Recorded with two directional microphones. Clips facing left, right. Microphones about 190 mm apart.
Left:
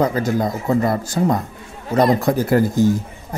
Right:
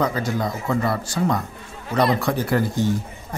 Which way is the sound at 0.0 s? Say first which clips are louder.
Left 4 dB; 45° left (ahead or behind).